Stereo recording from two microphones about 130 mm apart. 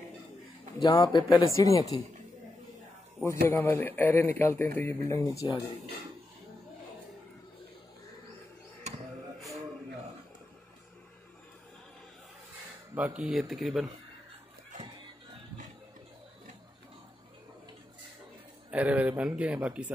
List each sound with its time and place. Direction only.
0.7 s speech: 30° left (ahead or behind)
3.3 s speech: 20° left (ahead or behind)
12.9 s speech: 10° right (ahead or behind)
18.7 s speech: 10° right (ahead or behind)